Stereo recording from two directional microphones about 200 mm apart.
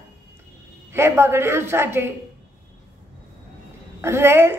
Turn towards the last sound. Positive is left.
turn(degrees=-10)  # may be behind; listen again after turning